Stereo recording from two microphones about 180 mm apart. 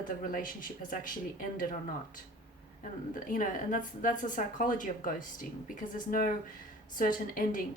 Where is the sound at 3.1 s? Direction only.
45° left (ahead or behind).